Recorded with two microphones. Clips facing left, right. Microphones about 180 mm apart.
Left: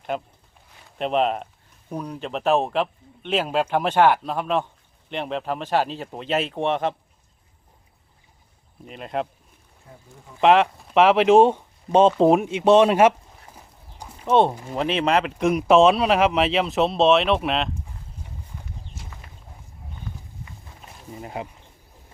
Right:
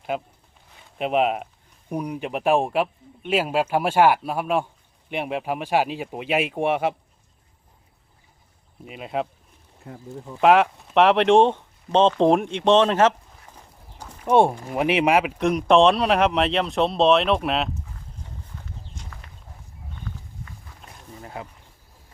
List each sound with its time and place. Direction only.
0.1 s a man's voice: 10° right (ahead or behind)
8.8 s speech: 5° right (ahead or behind)
10.4 s speech: centre (ahead or behind)
14.3 s a man's voice: 10° right (ahead or behind)
19.0 s clip-clop: 5° left (ahead or behind)
21.1 s a sound: 20° left (ahead or behind)